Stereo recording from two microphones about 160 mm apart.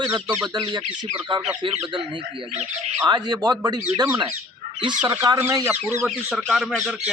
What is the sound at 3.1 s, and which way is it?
Speech, 25° right (ahead or behind).